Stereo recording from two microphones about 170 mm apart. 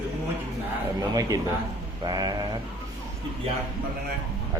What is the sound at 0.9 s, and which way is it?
A man's voice, 20° right (ahead or behind).